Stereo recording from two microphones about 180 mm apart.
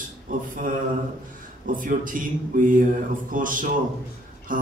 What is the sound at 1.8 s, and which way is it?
A man's voice, 50° right (ahead or behind).